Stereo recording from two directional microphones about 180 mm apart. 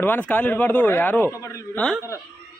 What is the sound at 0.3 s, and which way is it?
Speech, 10° left (ahead or behind).